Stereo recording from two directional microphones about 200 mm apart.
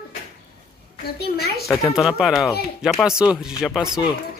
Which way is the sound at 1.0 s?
50° left (ahead or behind).